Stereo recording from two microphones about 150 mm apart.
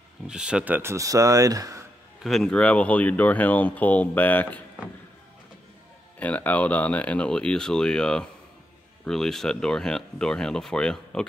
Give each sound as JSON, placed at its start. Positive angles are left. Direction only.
{"t": 0.3, "sound": "speech", "side_deg": -5}
{"t": 2.2, "sound": "speech", "side_deg": 5}
{"t": 6.1, "sound": "speech", "side_deg": 10}